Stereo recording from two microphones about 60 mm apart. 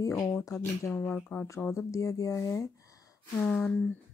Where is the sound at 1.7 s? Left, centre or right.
Left.